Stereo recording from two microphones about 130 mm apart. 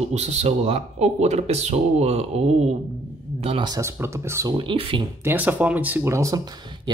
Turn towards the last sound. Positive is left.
turn(degrees=-25)  # may be behind; listen again after turning